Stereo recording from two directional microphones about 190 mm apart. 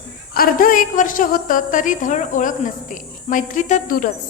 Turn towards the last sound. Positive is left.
turn(degrees=40)  # may be behind; listen again after turning